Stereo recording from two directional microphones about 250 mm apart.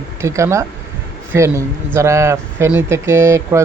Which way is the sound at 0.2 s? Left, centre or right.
Centre.